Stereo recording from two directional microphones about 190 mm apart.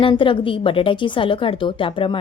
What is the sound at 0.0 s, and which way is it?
A woman's voice, 25° left (ahead or behind).